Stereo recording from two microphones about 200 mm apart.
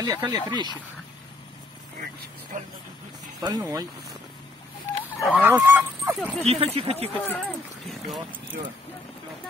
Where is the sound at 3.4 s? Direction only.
20° right (ahead or behind).